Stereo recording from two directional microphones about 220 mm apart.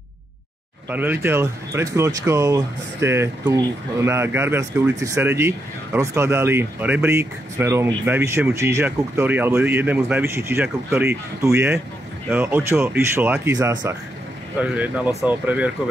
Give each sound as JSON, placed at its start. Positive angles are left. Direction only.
{"t": 0.8, "sound": "speech", "side_deg": -10}